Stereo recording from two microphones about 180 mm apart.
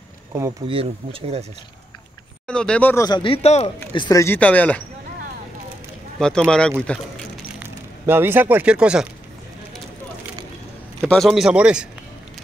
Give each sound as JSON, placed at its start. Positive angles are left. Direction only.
{"t": 0.3, "sound": "speech", "side_deg": -20}
{"t": 2.4, "sound": "speech", "side_deg": 5}
{"t": 3.1, "sound": "speech", "side_deg": 30}
{"t": 6.1, "sound": "speech", "side_deg": 5}
{"t": 7.5, "sound": "speech", "side_deg": -10}
{"t": 11.0, "sound": "speech", "side_deg": 0}